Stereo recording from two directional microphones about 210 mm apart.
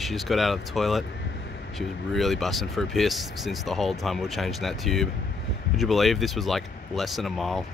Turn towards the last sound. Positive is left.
turn(degrees=0)  # may be behind; listen again after turning